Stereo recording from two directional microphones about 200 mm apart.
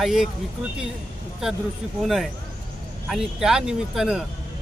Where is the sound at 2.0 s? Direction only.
Centre (ahead or behind).